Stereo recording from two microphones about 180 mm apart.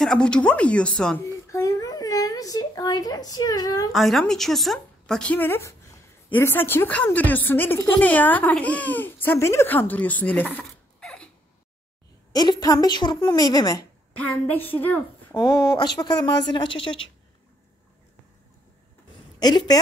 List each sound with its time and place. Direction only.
0.0 s a woman's voice: 5° left (ahead or behind)
1.2 s speech: 15° left (ahead or behind)
3.9 s a woman's voice: centre (ahead or behind)
11.0 s a sound: 5° left (ahead or behind)
12.3 s a woman's voice: 20° left (ahead or behind)
14.2 s a woman's voice: 10° left (ahead or behind)
15.3 s a woman's voice: 25° left (ahead or behind)
19.4 s a woman's voice: 20° left (ahead or behind)